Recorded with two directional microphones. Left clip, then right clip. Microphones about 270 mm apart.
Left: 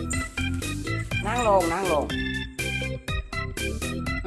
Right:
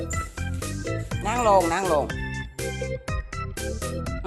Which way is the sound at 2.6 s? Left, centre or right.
Centre.